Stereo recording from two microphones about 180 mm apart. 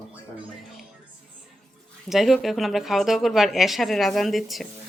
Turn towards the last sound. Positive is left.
turn(degrees=0)  # may be behind; listen again after turning